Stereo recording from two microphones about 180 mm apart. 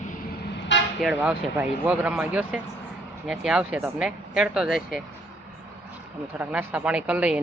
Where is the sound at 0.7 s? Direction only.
85° left.